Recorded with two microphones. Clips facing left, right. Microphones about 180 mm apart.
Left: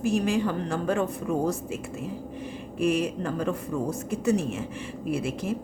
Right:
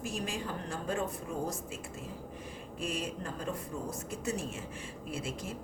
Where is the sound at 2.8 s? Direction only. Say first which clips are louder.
Left 12 dB; 70° left (ahead or behind).